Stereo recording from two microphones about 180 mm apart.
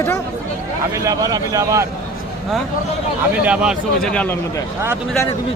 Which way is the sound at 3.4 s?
5° right (ahead or behind).